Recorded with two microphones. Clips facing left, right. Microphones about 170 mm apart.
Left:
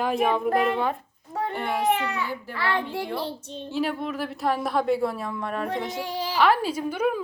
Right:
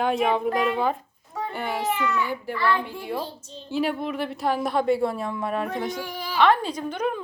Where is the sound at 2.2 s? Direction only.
15° right (ahead or behind).